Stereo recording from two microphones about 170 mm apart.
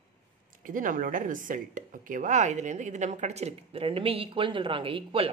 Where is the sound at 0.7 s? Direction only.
50° right (ahead or behind).